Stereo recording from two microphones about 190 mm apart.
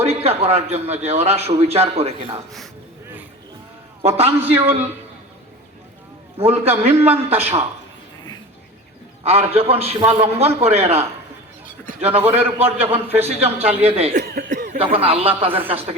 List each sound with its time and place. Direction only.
0.0 s a man's voice: 35° right (ahead or behind)
4.0 s a man's voice: 35° right (ahead or behind)
4.5 s a man's voice: 10° right (ahead or behind)
6.3 s a man's voice: 35° right (ahead or behind)
9.2 s a man's voice: 30° right (ahead or behind)
12.0 s a man's voice: 10° right (ahead or behind)
12.4 s a man's voice: 30° right (ahead or behind)
14.1 s speech: 50° right (ahead or behind)
15.4 s a man's voice: 30° right (ahead or behind)